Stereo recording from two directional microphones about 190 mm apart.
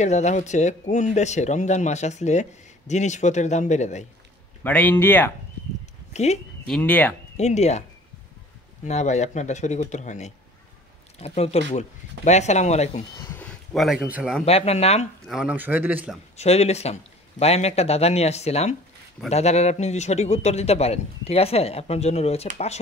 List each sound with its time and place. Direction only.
0.0 s a man's voice: 35° left (ahead or behind)
4.6 s speech: 10° left (ahead or behind)
6.1 s speech: 35° left (ahead or behind)
6.7 s speech: 10° left (ahead or behind)
7.3 s a man's voice: 35° left (ahead or behind)
8.8 s a man's voice: 35° left (ahead or behind)
13.3 s speech: 5° left (ahead or behind)
14.4 s a man's voice: 35° left (ahead or behind)
15.2 s a man's voice: 5° right (ahead or behind)
16.3 s a man's voice: 35° left (ahead or behind)